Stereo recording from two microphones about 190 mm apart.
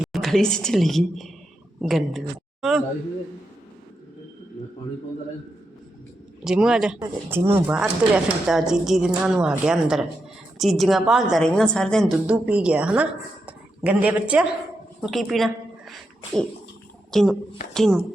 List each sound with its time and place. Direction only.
0.0 s a woman's voice: centre (ahead or behind)
6.4 s a woman's voice: 5° right (ahead or behind)
15.0 s a sound: centre (ahead or behind)
17.1 s a woman's voice: 5° left (ahead or behind)